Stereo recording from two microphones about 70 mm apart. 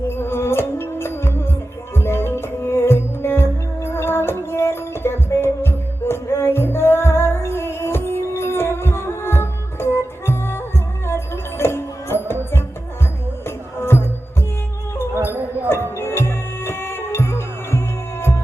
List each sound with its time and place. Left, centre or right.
0.1 s music: left
16.0 s music: left